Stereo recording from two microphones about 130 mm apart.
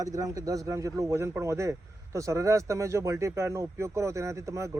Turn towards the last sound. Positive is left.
turn(degrees=-25)  # may be behind; listen again after turning